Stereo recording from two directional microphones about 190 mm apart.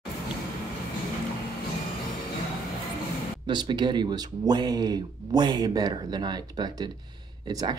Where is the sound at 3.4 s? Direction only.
25° right (ahead or behind).